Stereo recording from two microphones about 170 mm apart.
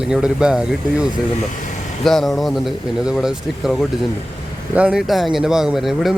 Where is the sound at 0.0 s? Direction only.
5° right (ahead or behind).